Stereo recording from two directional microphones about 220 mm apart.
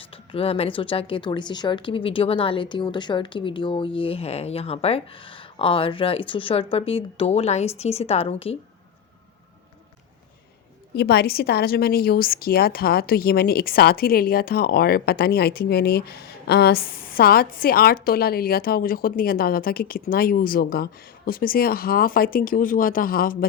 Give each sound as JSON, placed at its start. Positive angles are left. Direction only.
{"t": 0.0, "sound": "speech", "side_deg": 25}
{"t": 10.9, "sound": "a woman's voice", "side_deg": 45}